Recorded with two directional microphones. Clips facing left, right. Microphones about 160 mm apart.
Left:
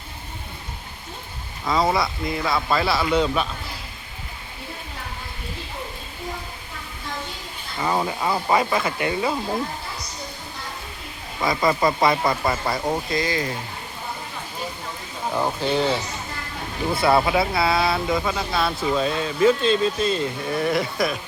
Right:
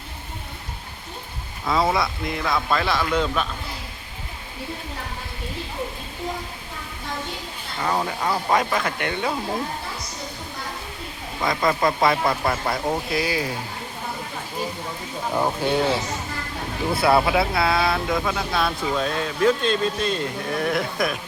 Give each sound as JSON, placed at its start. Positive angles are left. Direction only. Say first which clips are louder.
{"t": 1.6, "sound": "speech", "louder": "even", "side_deg": 0}
{"t": 7.8, "sound": "speech", "louder": "left 1 dB", "side_deg": 10}
{"t": 11.4, "sound": "speech", "louder": "left 1 dB", "side_deg": 0}
{"t": 15.3, "sound": "speech", "louder": "right 1 dB", "side_deg": -5}